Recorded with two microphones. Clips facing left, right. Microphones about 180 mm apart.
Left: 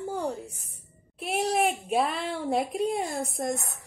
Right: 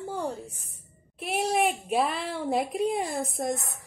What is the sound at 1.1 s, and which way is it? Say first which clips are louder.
A woman's voice: even; centre (ahead or behind).